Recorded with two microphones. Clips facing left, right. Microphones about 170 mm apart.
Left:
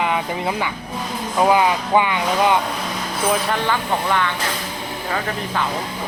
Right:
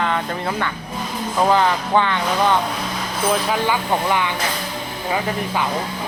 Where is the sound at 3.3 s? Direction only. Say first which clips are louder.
Right 1 dB; 5° right (ahead or behind).